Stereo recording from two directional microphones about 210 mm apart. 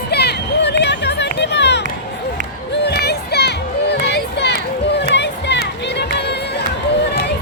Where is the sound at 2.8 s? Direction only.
50° left (ahead or behind).